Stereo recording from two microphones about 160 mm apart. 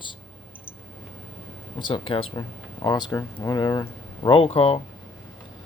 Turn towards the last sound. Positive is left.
turn(degrees=40)  # may be behind; listen again after turning